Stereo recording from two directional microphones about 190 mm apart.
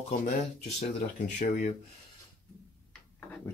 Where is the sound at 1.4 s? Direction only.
40° left (ahead or behind).